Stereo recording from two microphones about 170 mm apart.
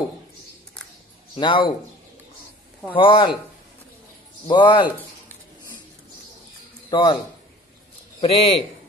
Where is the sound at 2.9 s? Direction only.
30° left (ahead or behind).